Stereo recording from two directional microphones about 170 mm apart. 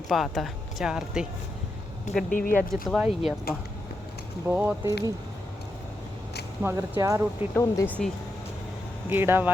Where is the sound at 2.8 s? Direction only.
Centre (ahead or behind).